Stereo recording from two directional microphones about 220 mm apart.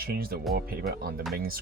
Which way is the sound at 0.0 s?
45° right (ahead or behind).